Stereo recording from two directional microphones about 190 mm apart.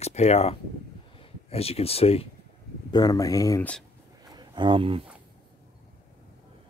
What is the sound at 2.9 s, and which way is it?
Speech, 20° left (ahead or behind).